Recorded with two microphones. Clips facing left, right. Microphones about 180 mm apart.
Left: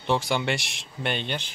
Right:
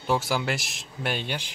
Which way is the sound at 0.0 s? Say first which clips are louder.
Left 1 dB; 5° right (ahead or behind).